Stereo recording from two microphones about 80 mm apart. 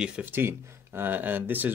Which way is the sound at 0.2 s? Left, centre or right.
Right.